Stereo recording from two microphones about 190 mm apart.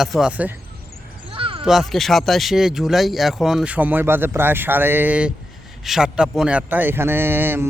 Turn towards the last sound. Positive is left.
turn(degrees=-10)  # may be behind; listen again after turning